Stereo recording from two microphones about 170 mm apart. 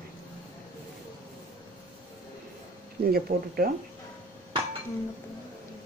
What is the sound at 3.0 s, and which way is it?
Speech, 60° right (ahead or behind).